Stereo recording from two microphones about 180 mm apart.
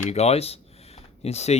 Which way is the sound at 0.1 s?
35° left (ahead or behind).